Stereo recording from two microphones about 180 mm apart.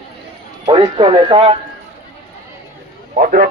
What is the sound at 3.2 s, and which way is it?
Speech, 55° right (ahead or behind).